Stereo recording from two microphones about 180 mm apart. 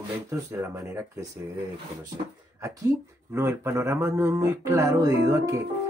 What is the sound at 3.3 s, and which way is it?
Speech, 15° right (ahead or behind).